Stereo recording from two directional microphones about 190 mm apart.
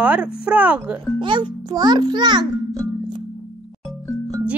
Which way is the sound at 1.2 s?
25° right (ahead or behind).